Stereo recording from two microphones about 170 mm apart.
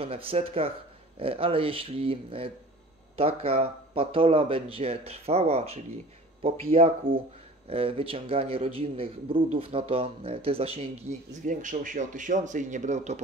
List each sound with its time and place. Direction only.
0.0 s a man's voice: 35° right (ahead or behind)
11.4 s speech: 50° right (ahead or behind)